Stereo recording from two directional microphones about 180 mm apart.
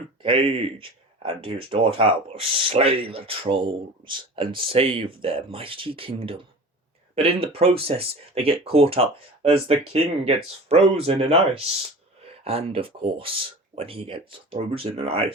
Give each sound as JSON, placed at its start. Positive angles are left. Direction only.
{"t": 0.2, "sound": "speech", "side_deg": -30}
{"t": 7.4, "sound": "speech", "side_deg": -35}